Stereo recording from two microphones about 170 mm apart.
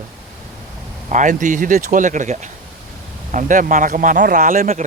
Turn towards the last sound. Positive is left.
turn(degrees=-50)  # may be behind; listen again after turning